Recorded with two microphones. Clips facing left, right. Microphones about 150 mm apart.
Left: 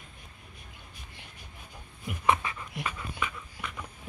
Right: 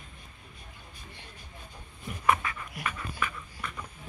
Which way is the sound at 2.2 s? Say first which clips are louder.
Even; 20° left (ahead or behind).